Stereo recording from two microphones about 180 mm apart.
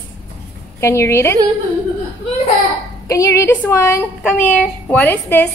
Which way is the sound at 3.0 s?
15° left (ahead or behind).